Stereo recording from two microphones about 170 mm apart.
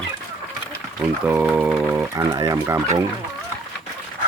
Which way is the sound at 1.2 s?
10° right (ahead or behind).